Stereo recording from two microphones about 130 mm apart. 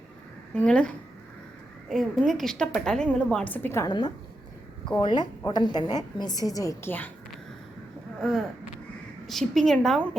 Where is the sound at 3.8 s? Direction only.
35° left (ahead or behind).